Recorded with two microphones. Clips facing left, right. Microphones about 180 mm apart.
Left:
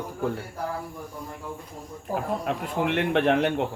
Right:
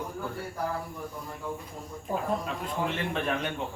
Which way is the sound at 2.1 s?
70° left (ahead or behind).